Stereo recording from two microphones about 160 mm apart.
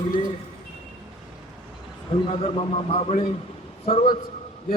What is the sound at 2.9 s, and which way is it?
Speech, 40° left (ahead or behind).